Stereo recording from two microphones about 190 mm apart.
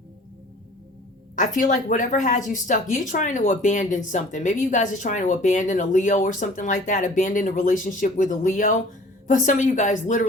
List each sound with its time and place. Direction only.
1.4 s speech: 40° left (ahead or behind)